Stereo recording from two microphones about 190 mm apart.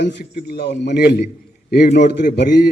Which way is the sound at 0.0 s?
60° left (ahead or behind).